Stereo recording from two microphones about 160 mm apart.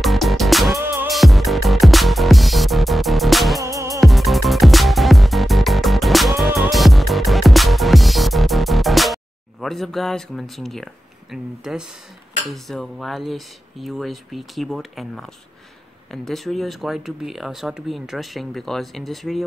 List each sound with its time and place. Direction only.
0.0 s music: centre (ahead or behind)
0.7 s music: 15° right (ahead or behind)
1.0 s music: centre (ahead or behind)
3.6 s music: 20° right (ahead or behind)
4.0 s music: centre (ahead or behind)
12.4 s speech: centre (ahead or behind)